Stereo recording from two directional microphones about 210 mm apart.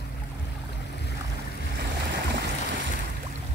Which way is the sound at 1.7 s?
55° right (ahead or behind).